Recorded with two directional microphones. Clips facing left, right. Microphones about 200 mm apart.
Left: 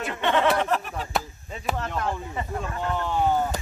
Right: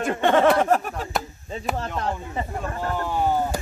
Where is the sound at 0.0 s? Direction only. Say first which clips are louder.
Right 5 dB; 45° right (ahead or behind).